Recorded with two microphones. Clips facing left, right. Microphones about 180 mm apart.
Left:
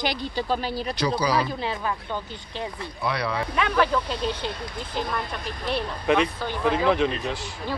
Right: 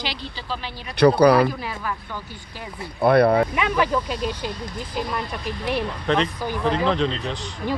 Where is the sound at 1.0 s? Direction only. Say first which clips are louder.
Right 10 dB; 60° right (ahead or behind).